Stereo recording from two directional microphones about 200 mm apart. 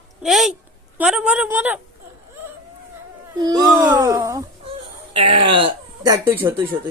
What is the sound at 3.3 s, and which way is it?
Speech, 20° right (ahead or behind).